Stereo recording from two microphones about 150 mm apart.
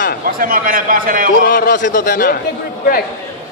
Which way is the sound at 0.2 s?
70° right (ahead or behind).